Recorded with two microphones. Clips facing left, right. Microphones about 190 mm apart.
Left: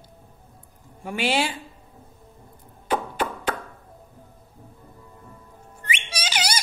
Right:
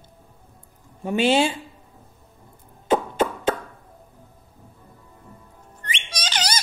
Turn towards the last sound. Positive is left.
turn(degrees=10)  # may be behind; listen again after turning